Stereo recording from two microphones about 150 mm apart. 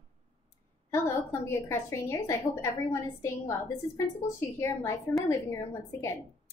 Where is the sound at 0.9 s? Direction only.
15° left (ahead or behind).